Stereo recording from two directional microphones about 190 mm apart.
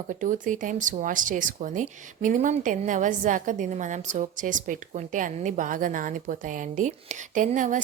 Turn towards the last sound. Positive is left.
turn(degrees=-40)  # may be behind; listen again after turning